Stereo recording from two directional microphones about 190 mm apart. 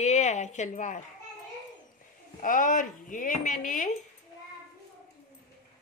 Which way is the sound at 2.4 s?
45° left (ahead or behind).